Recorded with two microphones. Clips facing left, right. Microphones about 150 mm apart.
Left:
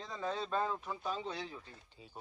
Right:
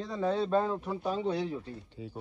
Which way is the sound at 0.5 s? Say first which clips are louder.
Right 7 dB; 30° right (ahead or behind).